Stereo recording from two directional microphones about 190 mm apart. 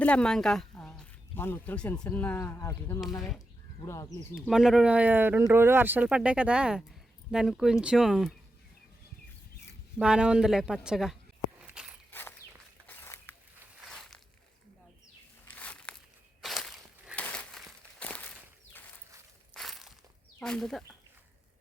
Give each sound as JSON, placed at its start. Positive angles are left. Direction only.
{"t": 0.0, "sound": "speech", "side_deg": 5}
{"t": 3.2, "sound": "speech", "side_deg": 0}
{"t": 3.8, "sound": "speech", "side_deg": 15}
{"t": 4.4, "sound": "speech", "side_deg": 0}
{"t": 10.0, "sound": "speech", "side_deg": -5}
{"t": 11.6, "sound": "walk", "side_deg": -5}
{"t": 12.9, "sound": "zipper", "side_deg": 10}
{"t": 13.9, "sound": "a sound", "side_deg": 0}
{"t": 15.4, "sound": "a sound", "side_deg": 5}
{"t": 16.4, "sound": "walk", "side_deg": 0}
{"t": 17.2, "sound": "crumpling", "side_deg": 5}
{"t": 18.0, "sound": "walk", "side_deg": 5}
{"t": 19.5, "sound": "a sound", "side_deg": 0}
{"t": 20.4, "sound": "speech", "side_deg": 5}